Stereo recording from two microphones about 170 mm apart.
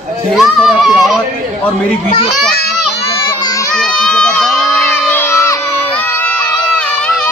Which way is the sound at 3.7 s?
5° left (ahead or behind).